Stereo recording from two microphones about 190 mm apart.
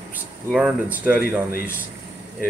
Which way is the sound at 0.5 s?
5° right (ahead or behind).